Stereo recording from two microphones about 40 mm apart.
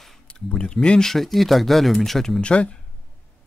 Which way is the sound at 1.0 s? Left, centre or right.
Centre.